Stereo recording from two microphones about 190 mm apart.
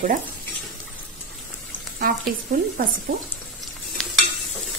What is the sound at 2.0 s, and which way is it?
Speech, 50° right (ahead or behind).